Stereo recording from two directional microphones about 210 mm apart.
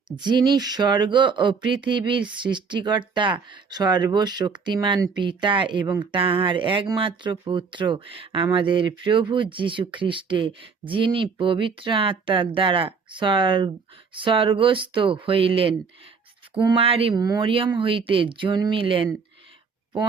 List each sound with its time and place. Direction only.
0.2 s speech: 20° right (ahead or behind)